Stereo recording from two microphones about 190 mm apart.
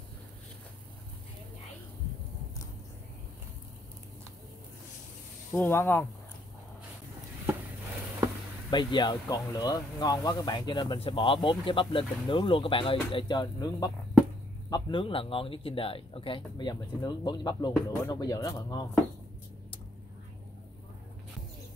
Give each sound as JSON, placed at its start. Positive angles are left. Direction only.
{"t": 5.5, "sound": "speech", "side_deg": 15}
{"t": 8.6, "sound": "speech", "side_deg": 25}